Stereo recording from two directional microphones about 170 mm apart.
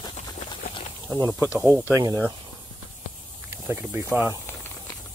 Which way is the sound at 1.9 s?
15° right (ahead or behind).